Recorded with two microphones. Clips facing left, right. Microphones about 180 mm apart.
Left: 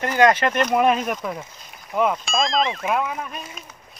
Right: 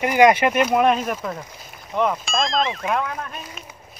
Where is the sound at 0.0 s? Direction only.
10° right (ahead or behind); by 3.4 s 5° left (ahead or behind).